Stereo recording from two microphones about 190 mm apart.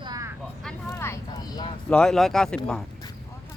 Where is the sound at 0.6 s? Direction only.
15° left (ahead or behind).